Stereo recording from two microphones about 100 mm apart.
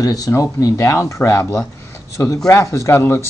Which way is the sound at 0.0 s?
35° left (ahead or behind).